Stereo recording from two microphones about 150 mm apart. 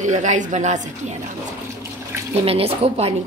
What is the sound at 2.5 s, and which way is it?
Speech, 40° right (ahead or behind).